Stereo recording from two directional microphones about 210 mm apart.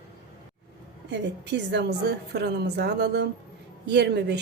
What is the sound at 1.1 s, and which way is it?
A woman's voice, 55° right (ahead or behind).